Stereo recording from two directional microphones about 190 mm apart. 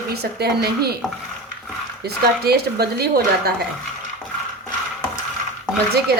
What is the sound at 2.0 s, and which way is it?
Speech, 55° right (ahead or behind).